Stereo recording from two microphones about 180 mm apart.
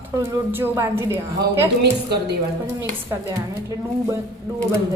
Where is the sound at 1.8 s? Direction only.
65° right (ahead or behind).